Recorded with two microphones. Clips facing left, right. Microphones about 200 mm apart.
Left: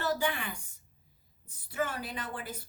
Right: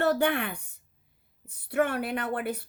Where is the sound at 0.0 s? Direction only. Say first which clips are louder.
Right 7 dB; 60° right (ahead or behind).